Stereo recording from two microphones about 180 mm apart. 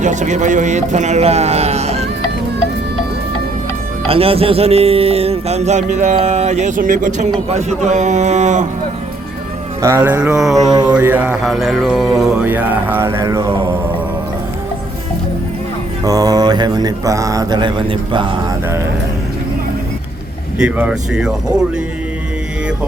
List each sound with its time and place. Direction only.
0.0 s a sound: 40° right (ahead or behind)
4.1 s a sound: 30° right (ahead or behind)
9.8 s mantra: 15° right (ahead or behind)
10.7 s mantra: 25° right (ahead or behind)
10.9 s mantra: 10° right (ahead or behind)
16.0 s mantra: 20° right (ahead or behind)
20.6 s speech: 5° right (ahead or behind)